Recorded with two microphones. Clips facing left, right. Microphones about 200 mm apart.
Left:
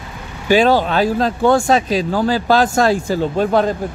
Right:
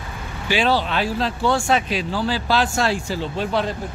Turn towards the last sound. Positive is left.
turn(degrees=45)  # may be behind; listen again after turning